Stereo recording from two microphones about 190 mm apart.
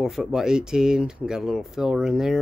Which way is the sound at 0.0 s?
Centre (ahead or behind).